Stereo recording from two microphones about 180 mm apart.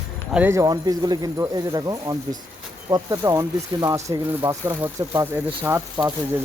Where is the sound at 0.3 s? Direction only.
15° right (ahead or behind).